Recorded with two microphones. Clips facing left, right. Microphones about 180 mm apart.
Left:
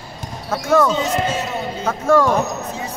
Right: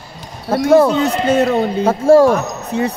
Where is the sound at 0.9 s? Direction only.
60° right (ahead or behind).